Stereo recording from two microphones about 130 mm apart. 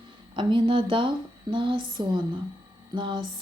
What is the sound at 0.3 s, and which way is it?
A woman's voice, 40° right (ahead or behind).